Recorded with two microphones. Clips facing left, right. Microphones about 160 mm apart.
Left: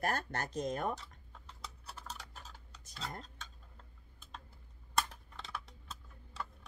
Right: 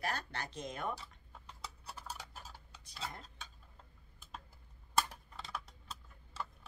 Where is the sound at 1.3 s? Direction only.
5° right (ahead or behind).